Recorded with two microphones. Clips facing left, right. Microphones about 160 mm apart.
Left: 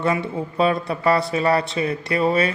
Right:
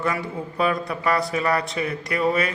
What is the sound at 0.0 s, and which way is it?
Speech, 25° left (ahead or behind).